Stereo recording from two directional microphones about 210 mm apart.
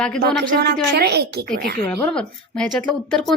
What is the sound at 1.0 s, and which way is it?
Speech, 50° right (ahead or behind).